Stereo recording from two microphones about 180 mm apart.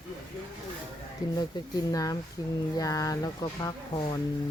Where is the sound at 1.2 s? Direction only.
20° left (ahead or behind).